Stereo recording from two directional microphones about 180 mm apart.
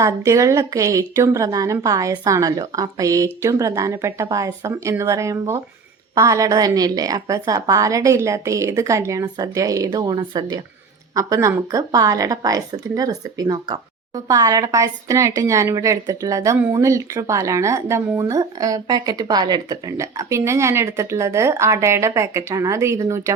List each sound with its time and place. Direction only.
0.0 s a woman's voice: 15° right (ahead or behind)